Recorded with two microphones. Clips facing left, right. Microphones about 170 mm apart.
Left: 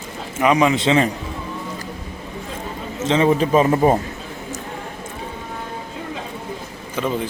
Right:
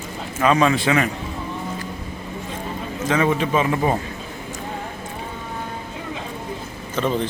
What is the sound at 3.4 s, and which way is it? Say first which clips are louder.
Speech: left 5 dB; 40° left (ahead or behind).